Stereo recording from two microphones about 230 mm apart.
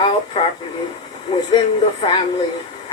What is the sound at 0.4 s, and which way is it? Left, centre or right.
Speech, left.